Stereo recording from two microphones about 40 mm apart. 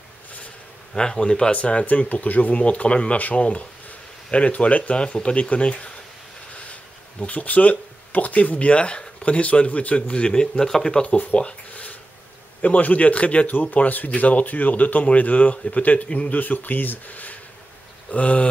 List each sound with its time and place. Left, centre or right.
0.9 s speech: centre
1.6 s speech: left
10.6 s speech: centre
11.3 s a sound: left
12.6 s speech: left
18.1 s speech: left